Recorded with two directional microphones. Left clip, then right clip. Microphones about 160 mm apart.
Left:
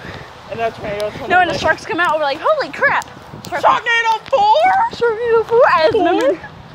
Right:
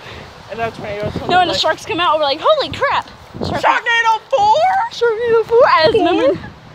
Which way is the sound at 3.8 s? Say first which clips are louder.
Right 1 dB; 10° right (ahead or behind).